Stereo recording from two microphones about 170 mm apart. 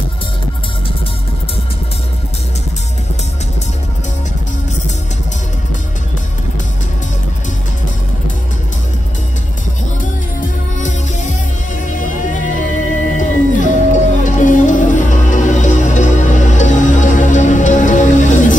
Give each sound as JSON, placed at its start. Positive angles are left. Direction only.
{"t": 10.8, "sound": "music", "side_deg": 45}